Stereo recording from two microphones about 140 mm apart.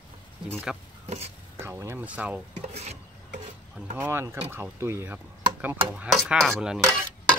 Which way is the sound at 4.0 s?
15° right (ahead or behind).